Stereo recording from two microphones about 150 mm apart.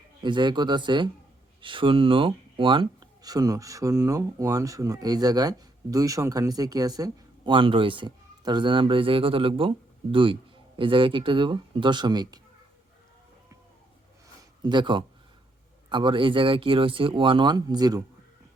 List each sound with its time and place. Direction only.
0.2 s speech: 30° right (ahead or behind)
14.6 s speech: 30° right (ahead or behind)